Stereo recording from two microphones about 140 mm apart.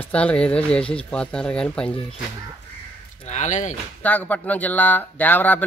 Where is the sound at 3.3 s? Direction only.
60° left (ahead or behind).